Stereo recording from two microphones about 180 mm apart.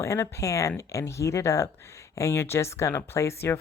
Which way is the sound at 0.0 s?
15° left (ahead or behind).